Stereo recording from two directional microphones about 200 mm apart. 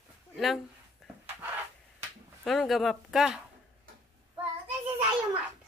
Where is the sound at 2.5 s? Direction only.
Centre (ahead or behind).